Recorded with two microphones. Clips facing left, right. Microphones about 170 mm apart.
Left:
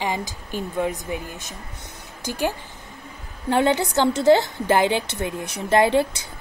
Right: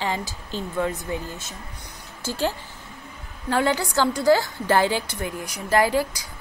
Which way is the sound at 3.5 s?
20° left (ahead or behind).